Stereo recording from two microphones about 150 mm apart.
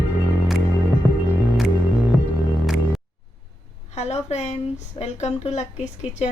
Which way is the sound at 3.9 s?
45° left (ahead or behind).